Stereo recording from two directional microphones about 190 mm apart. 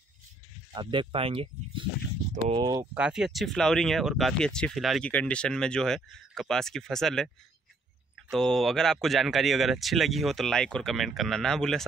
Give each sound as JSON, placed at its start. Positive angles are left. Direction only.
{"t": 0.7, "sound": "speech", "side_deg": -25}
{"t": 2.9, "sound": "speech", "side_deg": -5}